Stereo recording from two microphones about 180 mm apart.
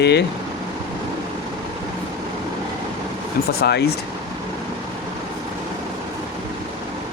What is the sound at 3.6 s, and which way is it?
Speech, 70° left (ahead or behind).